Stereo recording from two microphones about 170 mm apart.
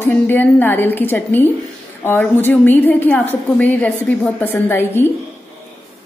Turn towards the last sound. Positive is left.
turn(degrees=10)  # may be behind; listen again after turning